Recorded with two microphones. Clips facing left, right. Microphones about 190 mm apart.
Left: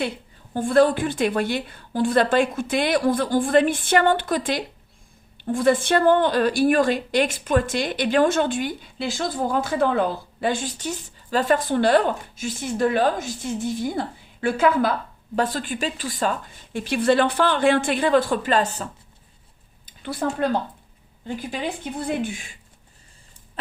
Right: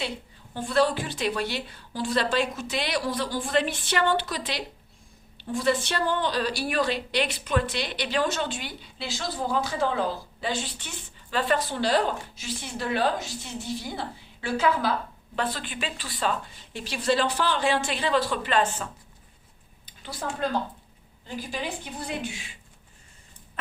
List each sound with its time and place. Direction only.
0.5 s a woman's voice: 50° left (ahead or behind)
19.8 s speech: 55° left (ahead or behind)
21.5 s a woman's voice: 55° left (ahead or behind)